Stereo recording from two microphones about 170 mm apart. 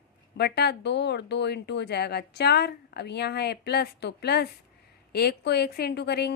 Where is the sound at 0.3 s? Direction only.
75° left (ahead or behind).